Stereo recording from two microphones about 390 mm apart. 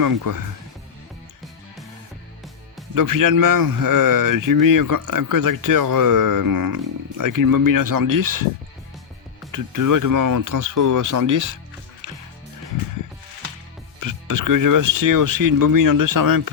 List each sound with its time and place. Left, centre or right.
0.0 s speech: right
2.9 s speech: right
9.5 s speech: right
12.0 s music: right
14.0 s speech: right